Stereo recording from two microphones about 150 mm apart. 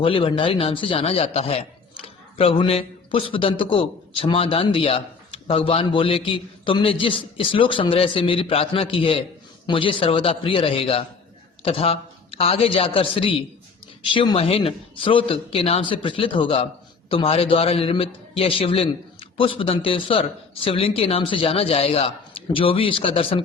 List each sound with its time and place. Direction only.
0.0 s speech: 35° left (ahead or behind)